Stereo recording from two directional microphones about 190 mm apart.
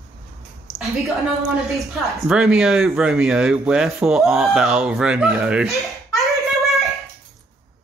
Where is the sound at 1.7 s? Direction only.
Centre (ahead or behind).